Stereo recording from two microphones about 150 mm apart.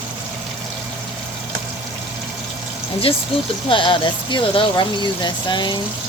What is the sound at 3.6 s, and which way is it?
Speech, 35° left (ahead or behind).